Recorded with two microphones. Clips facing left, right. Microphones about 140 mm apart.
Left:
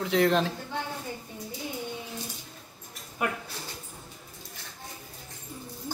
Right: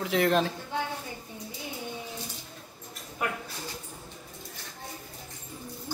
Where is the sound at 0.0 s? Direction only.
Centre (ahead or behind).